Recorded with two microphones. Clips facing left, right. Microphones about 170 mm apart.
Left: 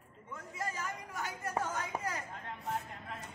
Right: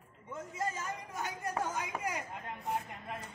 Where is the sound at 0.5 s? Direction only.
20° right (ahead or behind).